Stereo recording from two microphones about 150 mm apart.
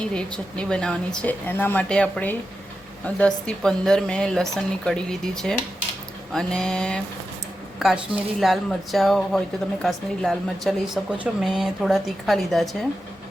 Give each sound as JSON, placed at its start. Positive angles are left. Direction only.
{"t": 0.0, "sound": "a woman's voice", "side_deg": 5}